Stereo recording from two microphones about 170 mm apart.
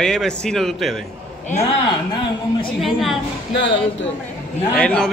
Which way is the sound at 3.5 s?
90° left.